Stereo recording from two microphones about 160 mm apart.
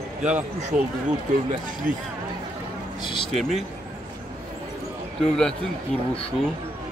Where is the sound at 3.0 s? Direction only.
30° left (ahead or behind).